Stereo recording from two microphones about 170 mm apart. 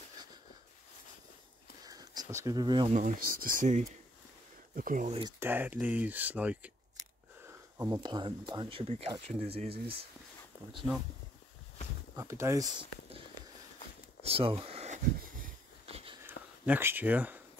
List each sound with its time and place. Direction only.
1.9 s a sound: 20° right (ahead or behind)
2.9 s speech: 50° right (ahead or behind)
5.4 s speech: 10° right (ahead or behind); by 9.9 s 35° right (ahead or behind)
12.2 s speech: 15° right (ahead or behind)
14.2 s speech: 35° right (ahead or behind)
15.1 s a sound: 55° right (ahead or behind)
16.6 s speech: 10° right (ahead or behind)